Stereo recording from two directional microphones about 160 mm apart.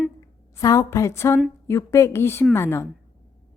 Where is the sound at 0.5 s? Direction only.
20° left (ahead or behind).